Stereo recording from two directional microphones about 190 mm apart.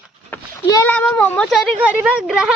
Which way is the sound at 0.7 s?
20° left (ahead or behind).